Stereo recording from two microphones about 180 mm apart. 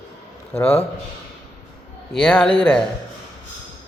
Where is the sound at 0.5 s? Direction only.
10° left (ahead or behind).